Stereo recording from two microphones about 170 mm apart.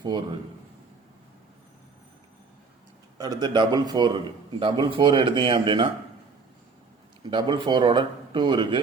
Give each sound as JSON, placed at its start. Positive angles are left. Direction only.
{"t": 3.2, "sound": "a man's voice", "side_deg": -25}
{"t": 7.3, "sound": "a man's voice", "side_deg": -30}